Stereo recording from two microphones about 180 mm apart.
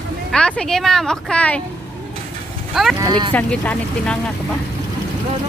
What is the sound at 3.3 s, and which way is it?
Speech, 10° left (ahead or behind).